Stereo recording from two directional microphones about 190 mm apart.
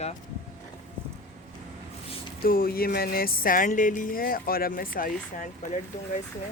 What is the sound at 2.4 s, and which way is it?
Music, 50° left (ahead or behind).